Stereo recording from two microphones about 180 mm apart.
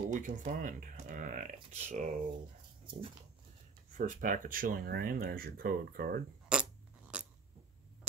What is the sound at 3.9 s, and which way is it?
Speech, 45° right (ahead or behind).